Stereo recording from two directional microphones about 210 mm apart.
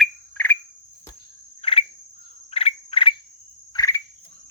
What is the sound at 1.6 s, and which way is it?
Cricket, 25° left (ahead or behind).